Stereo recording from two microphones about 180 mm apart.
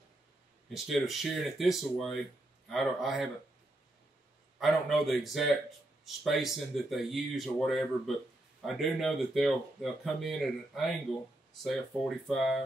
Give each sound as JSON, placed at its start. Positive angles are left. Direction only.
{"t": 0.7, "sound": "speech", "side_deg": 0}
{"t": 4.6, "sound": "speech", "side_deg": 0}